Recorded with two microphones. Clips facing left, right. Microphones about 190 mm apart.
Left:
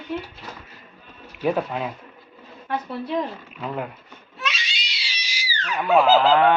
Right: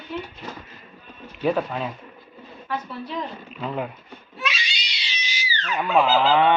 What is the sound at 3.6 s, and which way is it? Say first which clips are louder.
Goose: right 1 dB; centre (ahead or behind).